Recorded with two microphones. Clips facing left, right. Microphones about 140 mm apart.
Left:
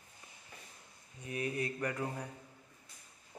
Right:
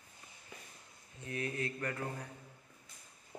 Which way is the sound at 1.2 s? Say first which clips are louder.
Left 2 dB; 15° left (ahead or behind).